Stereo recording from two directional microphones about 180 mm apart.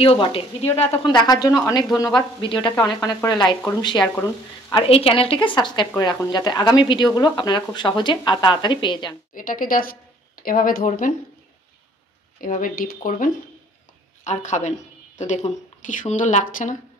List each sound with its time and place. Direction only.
0.0 s a woman's voice: 30° left (ahead or behind)
1.0 s a woman's voice: 20° left (ahead or behind)
4.8 s a woman's voice: 30° left (ahead or behind)
9.3 s speech: 50° left (ahead or behind)
12.4 s a woman's voice: 45° left (ahead or behind)